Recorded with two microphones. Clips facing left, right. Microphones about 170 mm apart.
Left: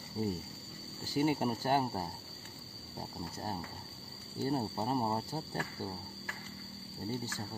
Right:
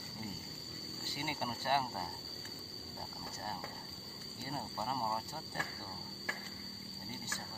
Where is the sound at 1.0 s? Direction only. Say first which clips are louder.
Left 11 dB; 40° left (ahead or behind).